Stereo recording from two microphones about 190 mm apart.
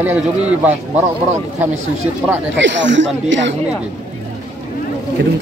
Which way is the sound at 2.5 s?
70° right (ahead or behind).